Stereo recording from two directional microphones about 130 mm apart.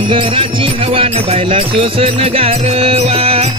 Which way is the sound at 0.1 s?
40° right (ahead or behind).